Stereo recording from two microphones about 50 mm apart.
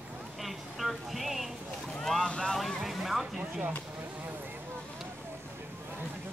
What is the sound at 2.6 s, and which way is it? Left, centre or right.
Vehicle, centre.